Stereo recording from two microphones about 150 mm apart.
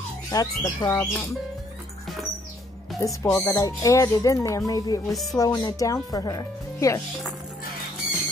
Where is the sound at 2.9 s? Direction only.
20° left (ahead or behind).